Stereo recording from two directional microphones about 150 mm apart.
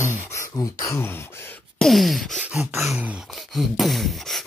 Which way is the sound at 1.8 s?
Centre (ahead or behind).